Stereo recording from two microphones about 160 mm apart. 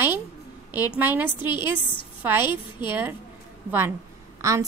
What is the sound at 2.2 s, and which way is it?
Speech, 15° right (ahead or behind).